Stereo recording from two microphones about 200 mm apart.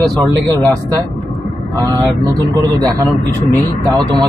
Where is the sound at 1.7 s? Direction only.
20° right (ahead or behind).